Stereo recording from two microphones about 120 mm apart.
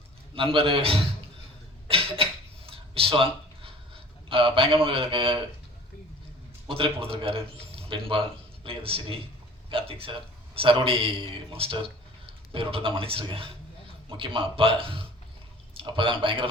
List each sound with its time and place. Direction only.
0.3 s a man's voice: 50° right (ahead or behind)
1.9 s a sound: 50° right (ahead or behind)
4.3 s a man's voice: 45° right (ahead or behind)
6.7 s a man's voice: 50° right (ahead or behind)